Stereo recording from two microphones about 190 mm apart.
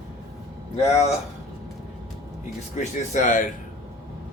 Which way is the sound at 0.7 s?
35° left (ahead or behind).